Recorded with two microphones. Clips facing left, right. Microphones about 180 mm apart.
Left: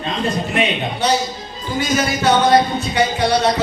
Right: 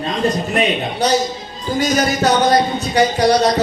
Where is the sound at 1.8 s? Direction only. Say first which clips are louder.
Right 2 dB; 40° right (ahead or behind).